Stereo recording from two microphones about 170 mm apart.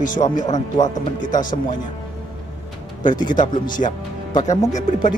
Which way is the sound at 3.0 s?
25° left (ahead or behind).